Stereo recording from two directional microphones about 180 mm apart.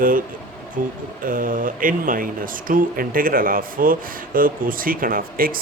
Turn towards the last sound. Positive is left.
turn(degrees=-50)  # may be behind; listen again after turning